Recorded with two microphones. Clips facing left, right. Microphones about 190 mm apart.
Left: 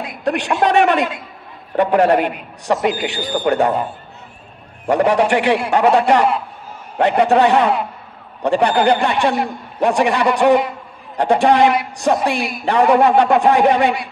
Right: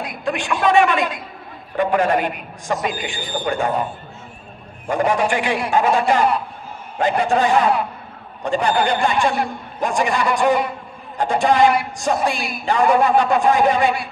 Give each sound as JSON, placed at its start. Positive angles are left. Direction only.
{"t": 0.2, "sound": "a man's voice", "side_deg": 65}
{"t": 4.8, "sound": "a man's voice", "side_deg": 65}